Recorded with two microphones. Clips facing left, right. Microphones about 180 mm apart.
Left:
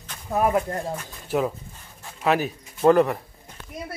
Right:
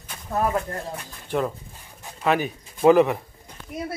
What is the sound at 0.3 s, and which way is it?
A man's voice, 10° left (ahead or behind).